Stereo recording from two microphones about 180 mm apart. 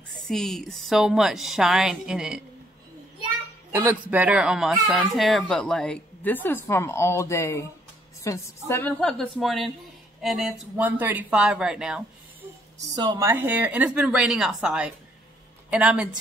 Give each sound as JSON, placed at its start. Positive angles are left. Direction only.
{"t": 0.3, "sound": "speech", "side_deg": 0}
{"t": 3.7, "sound": "a woman's voice", "side_deg": -10}
{"t": 12.8, "sound": "speech", "side_deg": -20}